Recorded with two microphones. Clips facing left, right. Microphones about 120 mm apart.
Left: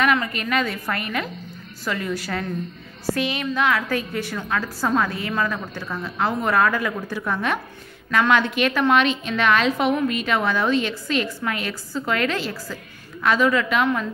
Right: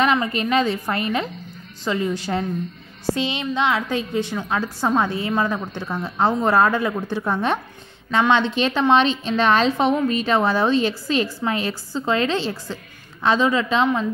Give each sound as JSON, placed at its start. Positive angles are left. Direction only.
{"t": 0.0, "sound": "a woman's voice", "side_deg": -25}